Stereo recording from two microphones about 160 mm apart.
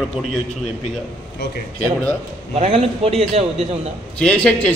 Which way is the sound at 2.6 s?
40° right (ahead or behind).